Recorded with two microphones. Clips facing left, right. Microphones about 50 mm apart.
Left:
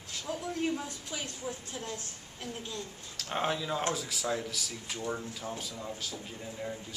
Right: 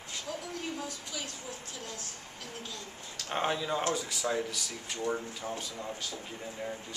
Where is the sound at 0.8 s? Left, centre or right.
Left.